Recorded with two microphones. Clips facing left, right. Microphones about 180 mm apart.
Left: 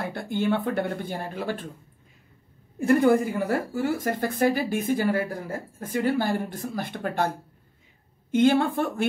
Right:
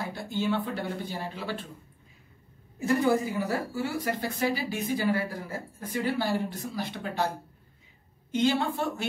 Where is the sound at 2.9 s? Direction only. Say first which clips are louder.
Left 5 dB; 55° left (ahead or behind).